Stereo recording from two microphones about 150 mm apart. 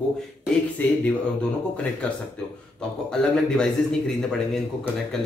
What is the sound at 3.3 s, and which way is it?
Speech, 5° left (ahead or behind).